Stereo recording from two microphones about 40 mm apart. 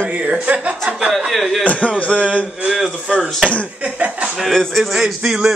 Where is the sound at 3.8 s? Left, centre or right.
Right.